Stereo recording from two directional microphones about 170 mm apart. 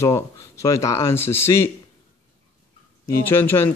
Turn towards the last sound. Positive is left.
turn(degrees=15)  # may be behind; listen again after turning